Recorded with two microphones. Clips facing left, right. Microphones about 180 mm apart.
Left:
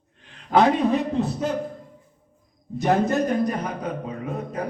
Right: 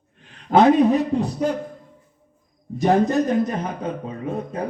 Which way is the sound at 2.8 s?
15° right (ahead or behind).